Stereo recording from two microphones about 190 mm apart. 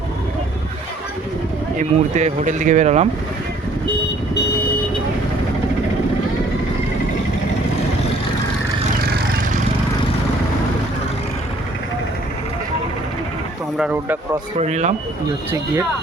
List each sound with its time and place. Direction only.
1.8 s speech: 40° right (ahead or behind)
9.0 s vehicle: 50° right (ahead or behind)
13.7 s speech: 5° right (ahead or behind)
14.6 s speech: 35° right (ahead or behind)